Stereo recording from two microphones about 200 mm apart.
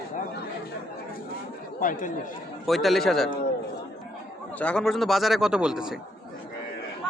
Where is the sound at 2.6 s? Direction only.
Centre (ahead or behind).